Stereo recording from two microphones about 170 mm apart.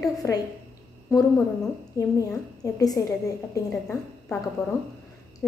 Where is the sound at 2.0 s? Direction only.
20° left (ahead or behind).